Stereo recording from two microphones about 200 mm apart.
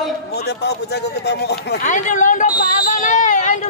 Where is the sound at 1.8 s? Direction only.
35° left (ahead or behind).